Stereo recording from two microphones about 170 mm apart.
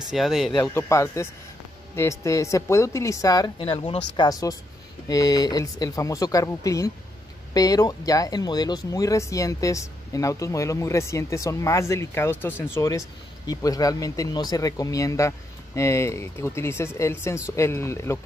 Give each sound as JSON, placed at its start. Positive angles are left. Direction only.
{"t": 0.1, "sound": "speech", "side_deg": 0}
{"t": 0.7, "sound": "speech", "side_deg": 15}